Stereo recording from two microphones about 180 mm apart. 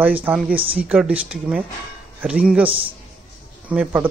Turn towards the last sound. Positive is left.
turn(degrees=-10)  # may be behind; listen again after turning